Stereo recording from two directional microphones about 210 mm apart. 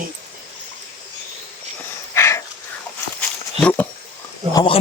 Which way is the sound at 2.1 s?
15° left (ahead or behind).